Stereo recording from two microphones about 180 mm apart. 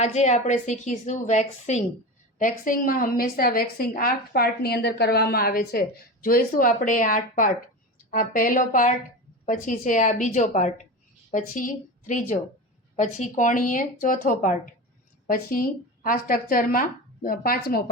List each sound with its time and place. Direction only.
0.0 s a woman's voice: 40° left (ahead or behind); by 17.8 s 55° left (ahead or behind)